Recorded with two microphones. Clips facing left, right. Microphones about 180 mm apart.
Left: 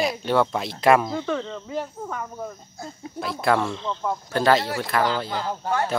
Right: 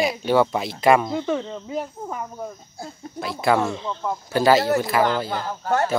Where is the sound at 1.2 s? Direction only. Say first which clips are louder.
Right 2 dB; 15° right (ahead or behind).